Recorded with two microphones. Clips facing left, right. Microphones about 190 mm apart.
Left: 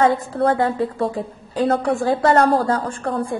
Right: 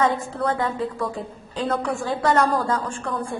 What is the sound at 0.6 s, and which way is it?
A woman's voice, 30° left (ahead or behind).